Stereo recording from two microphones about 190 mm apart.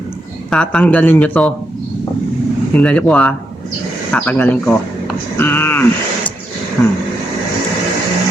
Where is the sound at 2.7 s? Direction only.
5° left (ahead or behind).